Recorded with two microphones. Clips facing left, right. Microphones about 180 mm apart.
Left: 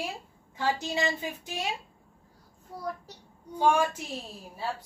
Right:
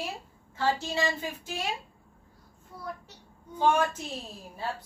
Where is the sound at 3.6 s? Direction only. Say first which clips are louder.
Left 1 dB; 10° left (ahead or behind).